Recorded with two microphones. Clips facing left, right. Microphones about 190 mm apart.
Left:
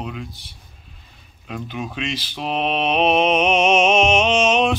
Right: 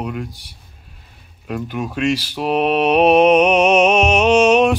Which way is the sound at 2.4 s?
10° right (ahead or behind).